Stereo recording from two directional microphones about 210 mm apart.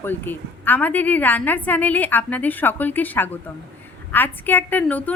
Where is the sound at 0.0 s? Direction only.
10° left (ahead or behind).